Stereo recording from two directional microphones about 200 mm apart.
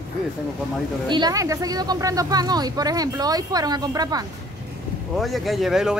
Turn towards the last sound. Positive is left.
turn(degrees=0)  # may be behind; listen again after turning